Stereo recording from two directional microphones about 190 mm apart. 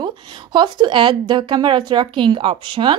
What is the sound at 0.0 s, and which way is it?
Speech, 25° right (ahead or behind).